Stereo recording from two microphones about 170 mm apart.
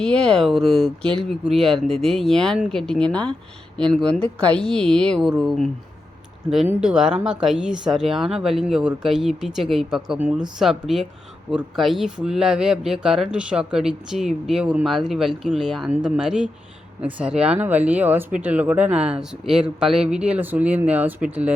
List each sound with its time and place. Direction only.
0.0 s speech: 5° left (ahead or behind)
6.8 s speech: 5° right (ahead or behind)